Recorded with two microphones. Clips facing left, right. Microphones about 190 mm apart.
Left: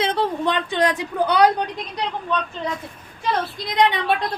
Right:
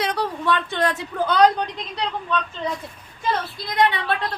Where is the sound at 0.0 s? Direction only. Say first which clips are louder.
Left 3 dB; 25° left (ahead or behind).